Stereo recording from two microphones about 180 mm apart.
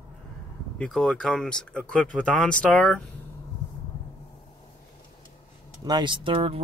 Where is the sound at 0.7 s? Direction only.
Centre (ahead or behind).